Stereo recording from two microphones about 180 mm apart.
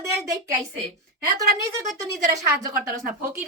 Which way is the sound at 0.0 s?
15° right (ahead or behind).